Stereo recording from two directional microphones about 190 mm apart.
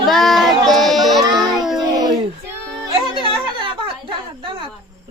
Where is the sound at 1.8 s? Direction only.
20° right (ahead or behind).